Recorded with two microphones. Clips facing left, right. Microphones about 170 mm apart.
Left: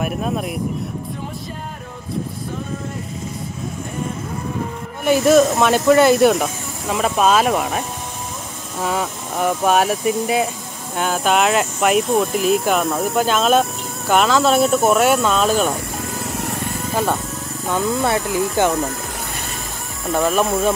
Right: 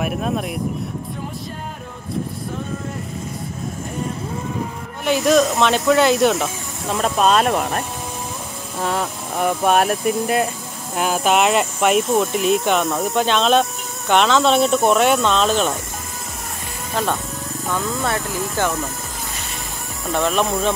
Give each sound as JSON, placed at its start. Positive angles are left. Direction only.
{"t": 0.0, "sound": "speech", "side_deg": 0}
{"t": 5.2, "sound": "speech", "side_deg": 5}
{"t": 16.9, "sound": "speech", "side_deg": 5}
{"t": 20.1, "sound": "speech", "side_deg": 0}